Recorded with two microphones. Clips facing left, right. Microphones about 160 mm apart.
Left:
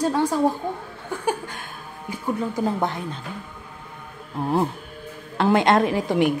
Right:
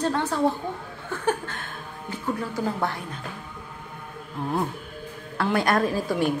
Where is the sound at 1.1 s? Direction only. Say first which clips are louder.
Even; 10° left (ahead or behind).